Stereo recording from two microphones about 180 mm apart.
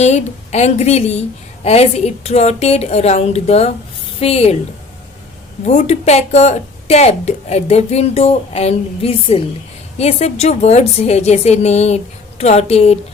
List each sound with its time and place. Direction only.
0.0 s speech: 40° left (ahead or behind)
5.6 s speech: 40° left (ahead or behind)